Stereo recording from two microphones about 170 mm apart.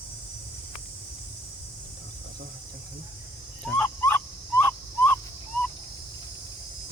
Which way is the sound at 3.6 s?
5° left (ahead or behind).